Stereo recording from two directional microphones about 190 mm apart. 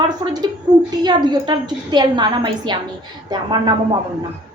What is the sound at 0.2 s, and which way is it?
A woman's voice, 20° right (ahead or behind).